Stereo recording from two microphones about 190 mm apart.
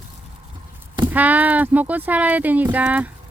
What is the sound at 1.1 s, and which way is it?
Speech, 10° right (ahead or behind).